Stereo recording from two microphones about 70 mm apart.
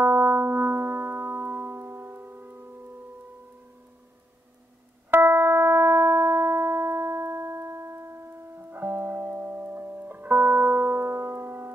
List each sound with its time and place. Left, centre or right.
0.0 s music: right
5.1 s music: right